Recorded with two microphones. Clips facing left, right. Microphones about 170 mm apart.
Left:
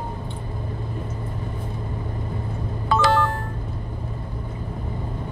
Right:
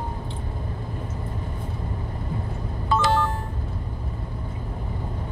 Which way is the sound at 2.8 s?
75° left (ahead or behind).